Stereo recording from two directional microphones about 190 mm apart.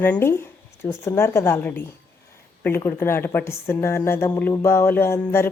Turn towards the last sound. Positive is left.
turn(degrees=15)  # may be behind; listen again after turning